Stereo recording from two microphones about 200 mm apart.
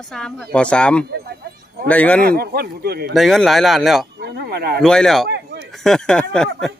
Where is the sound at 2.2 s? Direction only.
50° right (ahead or behind).